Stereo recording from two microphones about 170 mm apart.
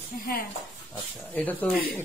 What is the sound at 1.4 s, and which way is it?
Speech, 10° left (ahead or behind).